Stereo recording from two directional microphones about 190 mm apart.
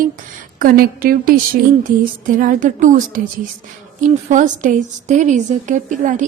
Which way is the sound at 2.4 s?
40° right (ahead or behind).